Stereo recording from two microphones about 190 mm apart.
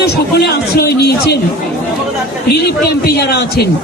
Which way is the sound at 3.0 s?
60° left (ahead or behind).